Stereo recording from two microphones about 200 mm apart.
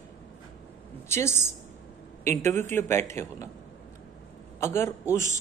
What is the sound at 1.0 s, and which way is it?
A woman's voice, 15° left (ahead or behind).